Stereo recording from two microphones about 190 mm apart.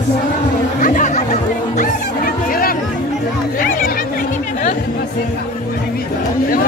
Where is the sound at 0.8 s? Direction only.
40° left (ahead or behind).